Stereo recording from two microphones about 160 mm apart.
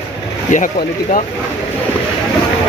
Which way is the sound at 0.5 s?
55° left (ahead or behind).